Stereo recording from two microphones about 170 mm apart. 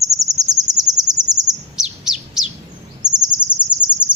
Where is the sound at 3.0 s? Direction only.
25° right (ahead or behind).